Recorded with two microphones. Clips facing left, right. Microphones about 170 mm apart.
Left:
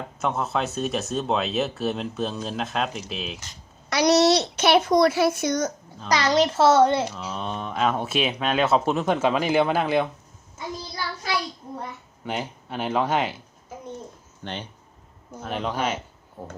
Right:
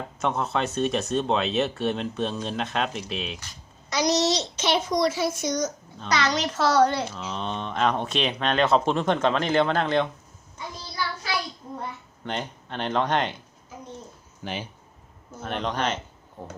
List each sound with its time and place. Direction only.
0.2 s speech: centre (ahead or behind)
3.8 s a child's voice: 65° left (ahead or behind)
6.1 s a child's voice: 30° left (ahead or behind)
7.1 s speech: 5° left (ahead or behind)
12.2 s speech: 5° left (ahead or behind)
14.4 s speech: 5° right (ahead or behind)
15.4 s speech: 5° left (ahead or behind)